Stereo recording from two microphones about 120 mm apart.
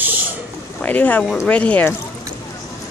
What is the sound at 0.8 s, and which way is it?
Speech, 15° left (ahead or behind).